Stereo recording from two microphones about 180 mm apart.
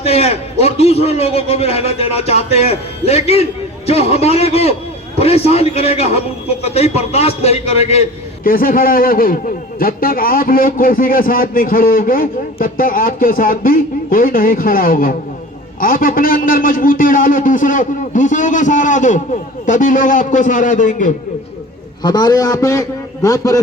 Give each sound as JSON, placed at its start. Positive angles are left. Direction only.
{"t": 0.0, "sound": "a man's voice", "side_deg": 35}
{"t": 8.4, "sound": "a man's voice", "side_deg": 50}
{"t": 22.0, "sound": "a man's voice", "side_deg": 25}